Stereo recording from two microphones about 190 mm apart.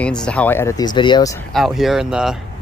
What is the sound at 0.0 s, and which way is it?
Speech, 5° left (ahead or behind).